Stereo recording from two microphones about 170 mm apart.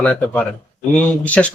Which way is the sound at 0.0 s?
10° left (ahead or behind).